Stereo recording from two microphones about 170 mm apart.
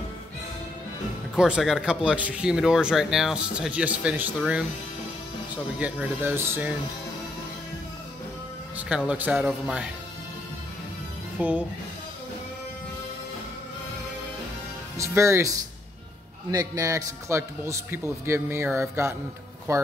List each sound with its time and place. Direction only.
1.3 s speech: 5° right (ahead or behind)
5.8 s a man's voice: 10° right (ahead or behind)
8.7 s speech: 5° right (ahead or behind)
11.3 s speech: 10° right (ahead or behind)
15.0 s a man's voice: 15° right (ahead or behind)